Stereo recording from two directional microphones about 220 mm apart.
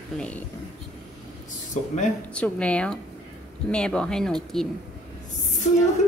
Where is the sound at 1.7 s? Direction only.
35° left (ahead or behind).